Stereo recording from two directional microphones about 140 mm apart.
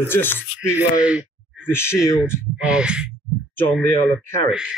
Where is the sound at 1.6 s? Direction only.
15° left (ahead or behind).